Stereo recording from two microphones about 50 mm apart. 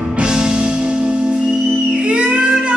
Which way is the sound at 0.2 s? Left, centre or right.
Centre.